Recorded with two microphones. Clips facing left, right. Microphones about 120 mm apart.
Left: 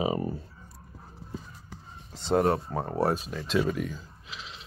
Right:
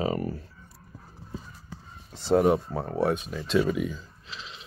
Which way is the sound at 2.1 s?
5° right (ahead or behind).